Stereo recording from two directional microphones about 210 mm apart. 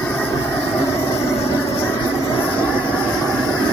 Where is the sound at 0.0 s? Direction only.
10° left (ahead or behind).